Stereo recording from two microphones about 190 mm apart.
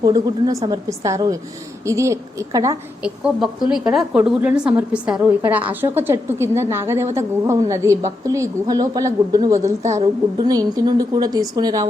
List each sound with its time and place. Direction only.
0.0 s a woman's voice: 20° right (ahead or behind)
3.0 s a woman's voice: centre (ahead or behind)
9.8 s a woman's voice: 35° right (ahead or behind)
10.4 s a woman's voice: 20° right (ahead or behind)